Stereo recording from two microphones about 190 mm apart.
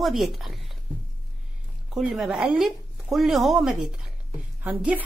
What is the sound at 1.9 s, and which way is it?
A woman's voice, centre (ahead or behind).